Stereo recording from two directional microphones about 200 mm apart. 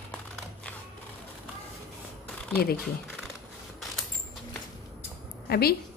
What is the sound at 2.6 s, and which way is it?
Speech, 50° left (ahead or behind).